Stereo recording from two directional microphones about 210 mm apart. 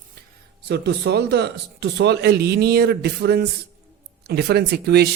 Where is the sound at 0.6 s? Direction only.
55° right (ahead or behind).